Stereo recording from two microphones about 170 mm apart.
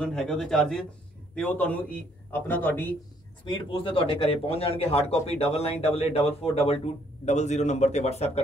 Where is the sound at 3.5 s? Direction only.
30° left (ahead or behind).